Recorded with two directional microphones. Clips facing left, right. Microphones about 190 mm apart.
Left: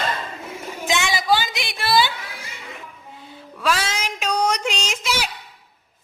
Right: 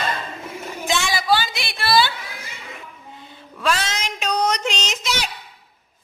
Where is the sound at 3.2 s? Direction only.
5° left (ahead or behind).